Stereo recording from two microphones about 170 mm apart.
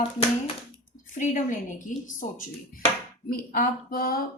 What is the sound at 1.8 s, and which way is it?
Speech, 50° left (ahead or behind).